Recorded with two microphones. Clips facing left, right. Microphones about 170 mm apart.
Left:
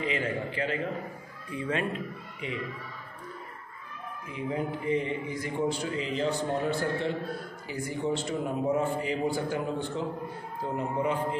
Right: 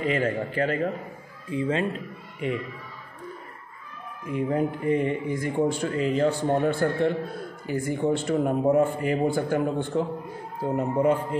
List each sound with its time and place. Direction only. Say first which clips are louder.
0.0 s a man's voice: right 5 dB; 45° right (ahead or behind)
1.5 s a man's voice: right 5 dB; 30° right (ahead or behind)
2.4 s a man's voice: right 8 dB; 50° right (ahead or behind)
4.3 s a man's voice: right 7 dB; 50° right (ahead or behind)